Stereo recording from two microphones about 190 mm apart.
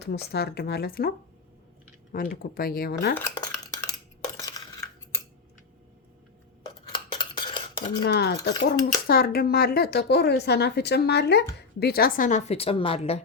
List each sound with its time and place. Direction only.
0.0 s a woman's voice: 55° left (ahead or behind)
2.1 s speech: 50° left (ahead or behind)
3.2 s dishes: 15° left (ahead or behind)
3.8 s cutlery: 20° left (ahead or behind)
6.6 s dishes: 25° left (ahead or behind)
8.0 s a woman's voice: 60° left (ahead or behind); by 13.2 s 35° left (ahead or behind)